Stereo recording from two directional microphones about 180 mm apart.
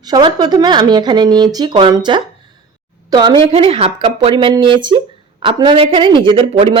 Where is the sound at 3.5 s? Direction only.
35° right (ahead or behind).